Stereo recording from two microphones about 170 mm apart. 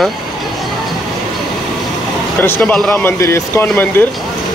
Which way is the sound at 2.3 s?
10° left (ahead or behind).